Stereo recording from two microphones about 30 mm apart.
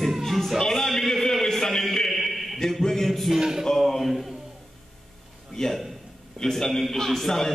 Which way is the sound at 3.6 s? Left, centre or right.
Centre.